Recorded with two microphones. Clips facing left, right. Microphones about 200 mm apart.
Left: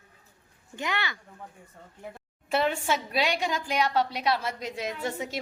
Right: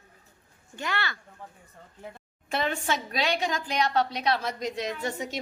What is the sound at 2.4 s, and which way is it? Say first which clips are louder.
A woman's voice: left 2 dB; 5° left (ahead or behind).